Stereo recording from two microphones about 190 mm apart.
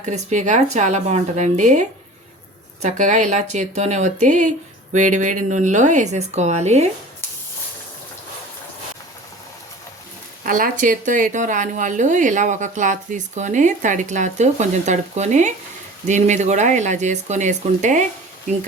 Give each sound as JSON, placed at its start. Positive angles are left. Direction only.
{"t": 0.0, "sound": "speech", "side_deg": -40}
{"t": 2.8, "sound": "speech", "side_deg": -40}
{"t": 10.4, "sound": "speech", "side_deg": -45}